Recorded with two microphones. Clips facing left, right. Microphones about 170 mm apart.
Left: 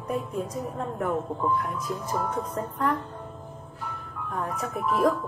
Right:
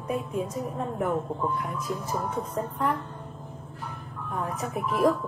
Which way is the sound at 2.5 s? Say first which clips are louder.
Right 1 dB; centre (ahead or behind).